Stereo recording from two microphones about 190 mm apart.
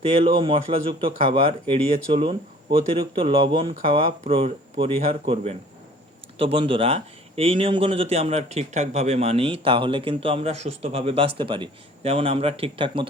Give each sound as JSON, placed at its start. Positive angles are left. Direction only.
{"t": 0.0, "sound": "speech", "side_deg": -30}